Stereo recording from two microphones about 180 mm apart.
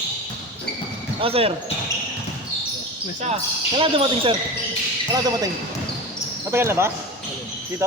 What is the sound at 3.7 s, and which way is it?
Speech, 30° right (ahead or behind).